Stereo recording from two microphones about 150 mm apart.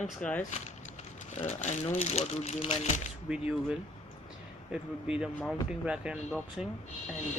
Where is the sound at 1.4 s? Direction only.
50° left (ahead or behind).